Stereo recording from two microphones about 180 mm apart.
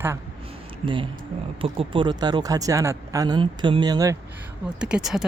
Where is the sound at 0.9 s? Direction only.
30° right (ahead or behind).